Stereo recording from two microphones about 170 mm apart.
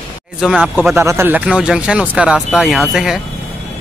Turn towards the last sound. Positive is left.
turn(degrees=0)  # may be behind; listen again after turning